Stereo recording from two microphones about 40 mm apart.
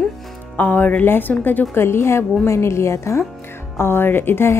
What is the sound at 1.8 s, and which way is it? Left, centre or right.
Speech, left.